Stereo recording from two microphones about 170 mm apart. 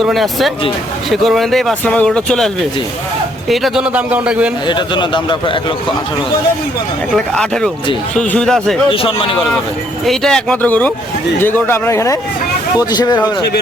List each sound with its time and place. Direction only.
0.0 s speech: centre (ahead or behind)
3.5 s speech: centre (ahead or behind)
4.6 s a man's voice: 25° left (ahead or behind)
7.3 s speech: 5° left (ahead or behind)
8.9 s speech: 30° left (ahead or behind)
10.1 s a man's voice: 5° left (ahead or behind); by 13.2 s 25° left (ahead or behind)